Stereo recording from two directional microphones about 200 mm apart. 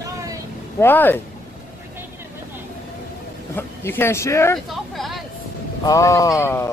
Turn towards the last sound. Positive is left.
turn(degrees=15)  # may be behind; listen again after turning